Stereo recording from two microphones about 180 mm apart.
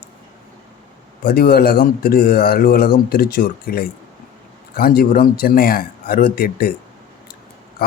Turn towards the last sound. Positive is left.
turn(degrees=55)  # may be behind; listen again after turning